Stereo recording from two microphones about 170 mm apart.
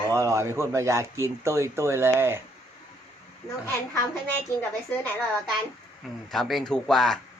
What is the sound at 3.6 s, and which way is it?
A woman's voice, 15° left (ahead or behind).